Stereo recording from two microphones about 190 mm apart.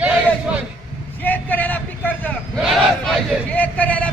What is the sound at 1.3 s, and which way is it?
Vehicle, 10° left (ahead or behind).